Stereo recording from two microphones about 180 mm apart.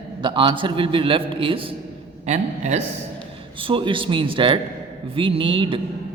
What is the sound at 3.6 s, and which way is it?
A man's voice, 30° right (ahead or behind).